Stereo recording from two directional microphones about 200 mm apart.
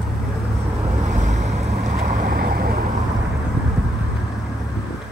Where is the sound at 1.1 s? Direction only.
35° right (ahead or behind).